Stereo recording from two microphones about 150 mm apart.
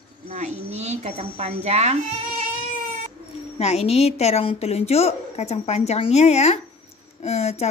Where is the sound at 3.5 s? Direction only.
45° left (ahead or behind).